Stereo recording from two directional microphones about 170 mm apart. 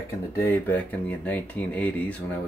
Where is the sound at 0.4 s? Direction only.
15° left (ahead or behind).